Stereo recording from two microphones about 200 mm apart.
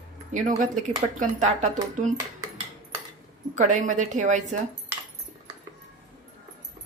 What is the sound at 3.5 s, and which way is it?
Speech, 40° right (ahead or behind).